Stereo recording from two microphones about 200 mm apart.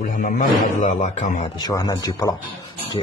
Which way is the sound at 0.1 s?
40° left (ahead or behind).